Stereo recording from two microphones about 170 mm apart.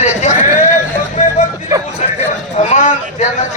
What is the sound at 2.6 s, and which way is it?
Speech, 45° left (ahead or behind).